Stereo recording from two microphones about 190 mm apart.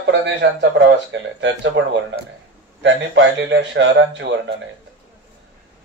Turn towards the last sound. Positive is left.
turn(degrees=-70)  # may be behind; listen again after turning